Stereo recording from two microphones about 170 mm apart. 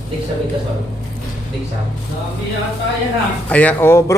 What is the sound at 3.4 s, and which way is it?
Speech, 10° left (ahead or behind).